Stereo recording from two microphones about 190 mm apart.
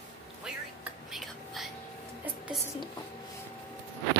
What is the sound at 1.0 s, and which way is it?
Whispering, centre (ahead or behind).